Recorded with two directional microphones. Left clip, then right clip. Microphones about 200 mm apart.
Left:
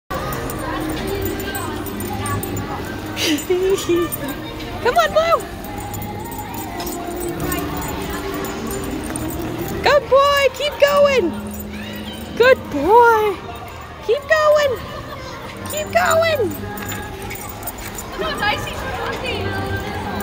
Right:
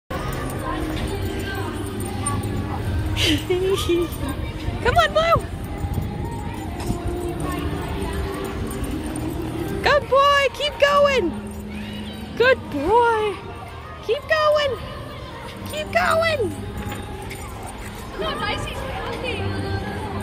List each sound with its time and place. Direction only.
3.2 s speech: 5° left (ahead or behind)
9.8 s a sound: 10° left (ahead or behind)
12.4 s speech: 15° left (ahead or behind)
14.0 s music: 15° left (ahead or behind)
15.7 s speech: 10° left (ahead or behind)